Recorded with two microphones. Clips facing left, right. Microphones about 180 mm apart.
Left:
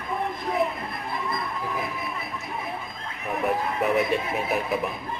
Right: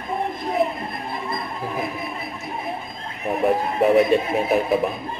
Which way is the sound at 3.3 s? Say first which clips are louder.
Right 5 dB; 30° right (ahead or behind).